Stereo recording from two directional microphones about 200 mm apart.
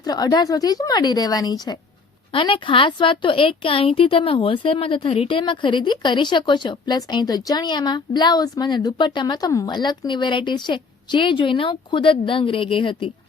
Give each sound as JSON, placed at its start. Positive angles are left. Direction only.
{"t": 0.0, "sound": "a woman's voice", "side_deg": 20}